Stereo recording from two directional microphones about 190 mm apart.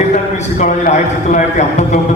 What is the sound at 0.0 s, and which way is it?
A man's voice, 40° left (ahead or behind).